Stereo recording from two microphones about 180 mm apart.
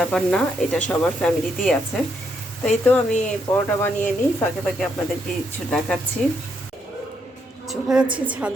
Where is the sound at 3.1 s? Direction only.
40° left (ahead or behind).